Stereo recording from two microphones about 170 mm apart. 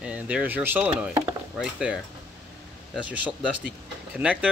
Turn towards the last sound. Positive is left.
turn(degrees=-10)  # may be behind; listen again after turning